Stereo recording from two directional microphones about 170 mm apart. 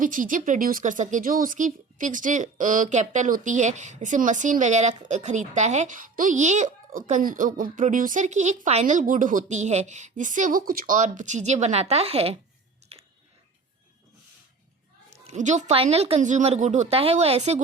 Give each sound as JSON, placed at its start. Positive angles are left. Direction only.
{"t": 0.0, "sound": "speech", "side_deg": -50}
{"t": 12.9, "sound": "a sound", "side_deg": -40}
{"t": 15.1, "sound": "speech", "side_deg": -40}